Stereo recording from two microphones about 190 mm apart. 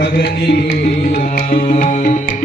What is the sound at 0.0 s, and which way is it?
Music, 60° left (ahead or behind).